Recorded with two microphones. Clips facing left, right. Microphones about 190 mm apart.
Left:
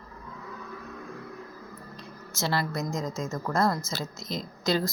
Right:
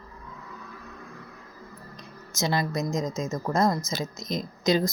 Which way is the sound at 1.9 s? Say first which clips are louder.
Left 1 dB; 15° right (ahead or behind).